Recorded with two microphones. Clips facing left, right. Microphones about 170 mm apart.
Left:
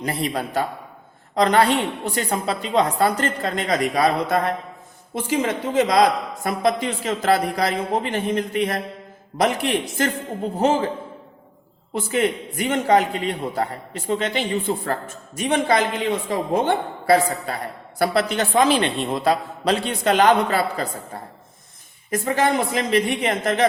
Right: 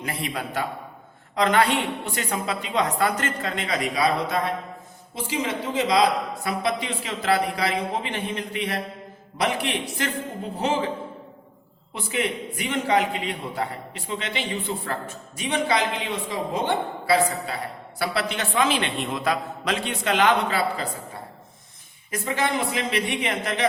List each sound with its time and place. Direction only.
0.0 s a woman's voice: 40° left (ahead or behind)
11.9 s a man's voice: 45° left (ahead or behind)